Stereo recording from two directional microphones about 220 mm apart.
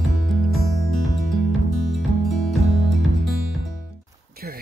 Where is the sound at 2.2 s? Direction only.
Centre (ahead or behind).